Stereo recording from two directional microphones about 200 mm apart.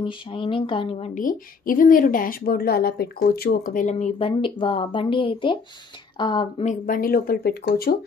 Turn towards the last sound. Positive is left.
turn(degrees=50)  # may be behind; listen again after turning